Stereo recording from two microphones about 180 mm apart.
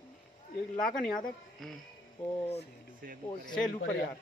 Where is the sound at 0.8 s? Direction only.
5° left (ahead or behind).